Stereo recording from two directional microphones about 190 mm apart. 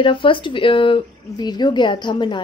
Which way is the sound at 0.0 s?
25° left (ahead or behind).